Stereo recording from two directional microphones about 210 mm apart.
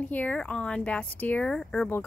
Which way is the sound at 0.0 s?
5° left (ahead or behind).